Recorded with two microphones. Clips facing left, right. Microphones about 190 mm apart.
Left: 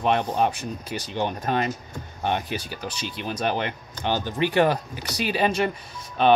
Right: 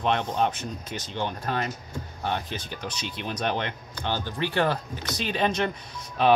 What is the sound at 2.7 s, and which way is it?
Speech, 5° left (ahead or behind).